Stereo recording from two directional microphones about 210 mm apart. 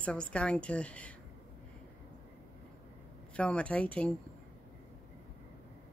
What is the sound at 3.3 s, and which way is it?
Speech, 5° left (ahead or behind).